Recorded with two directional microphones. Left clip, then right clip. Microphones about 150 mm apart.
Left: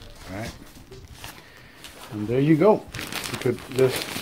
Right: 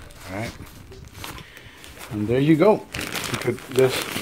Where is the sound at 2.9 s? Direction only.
35° right (ahead or behind).